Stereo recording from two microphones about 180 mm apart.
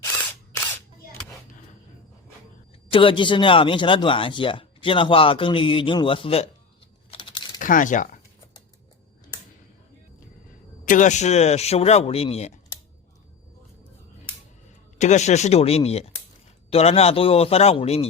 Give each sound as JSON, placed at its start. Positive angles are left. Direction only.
{"t": 2.9, "sound": "speech", "side_deg": 30}
{"t": 7.1, "sound": "crumpling", "side_deg": 25}
{"t": 7.6, "sound": "speech", "side_deg": 45}
{"t": 10.8, "sound": "speech", "side_deg": 45}
{"t": 14.9, "sound": "speech", "side_deg": 40}